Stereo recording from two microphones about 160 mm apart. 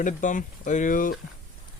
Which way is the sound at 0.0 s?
55° left (ahead or behind).